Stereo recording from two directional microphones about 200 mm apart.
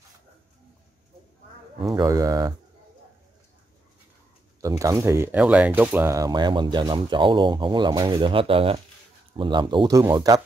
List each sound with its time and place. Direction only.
2.0 s speech: 15° right (ahead or behind)
4.6 s speech: 15° right (ahead or behind)